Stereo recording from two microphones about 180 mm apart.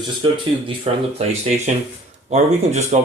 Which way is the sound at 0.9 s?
30° right (ahead or behind).